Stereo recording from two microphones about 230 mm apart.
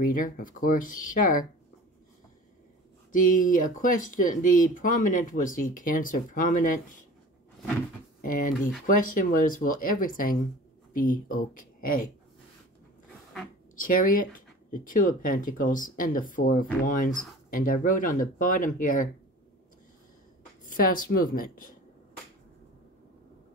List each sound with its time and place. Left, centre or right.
0.0 s speech: left
3.1 s speech: left
8.2 s speech: left
13.7 s speech: left
20.7 s speech: left